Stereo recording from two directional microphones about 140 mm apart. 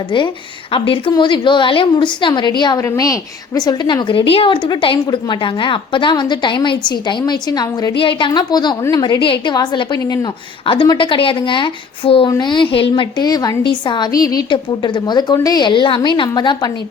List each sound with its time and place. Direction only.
0.1 s a woman's voice: 35° left (ahead or behind)